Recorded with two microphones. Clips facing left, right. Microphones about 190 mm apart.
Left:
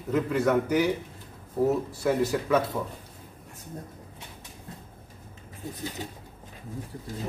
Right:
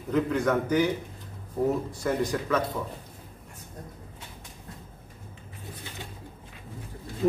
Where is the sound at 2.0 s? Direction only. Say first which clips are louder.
Left 2 dB; 5° left (ahead or behind).